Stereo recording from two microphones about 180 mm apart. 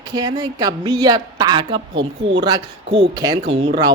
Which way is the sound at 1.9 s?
90° right.